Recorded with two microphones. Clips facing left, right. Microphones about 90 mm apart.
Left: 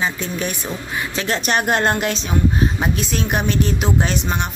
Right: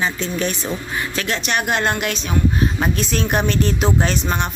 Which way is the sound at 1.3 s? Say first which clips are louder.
Left 3 dB; 35° left (ahead or behind).